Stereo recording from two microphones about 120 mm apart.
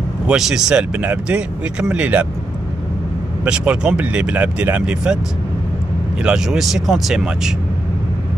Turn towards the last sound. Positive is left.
turn(degrees=-5)  # may be behind; listen again after turning